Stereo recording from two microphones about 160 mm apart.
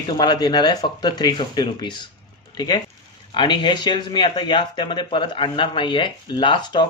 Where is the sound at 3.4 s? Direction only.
30° left (ahead or behind).